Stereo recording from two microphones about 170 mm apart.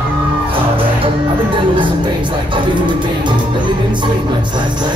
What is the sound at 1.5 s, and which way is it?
Music, 30° right (ahead or behind).